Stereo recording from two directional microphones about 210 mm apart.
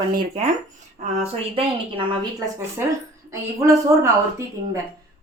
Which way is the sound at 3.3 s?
15° right (ahead or behind).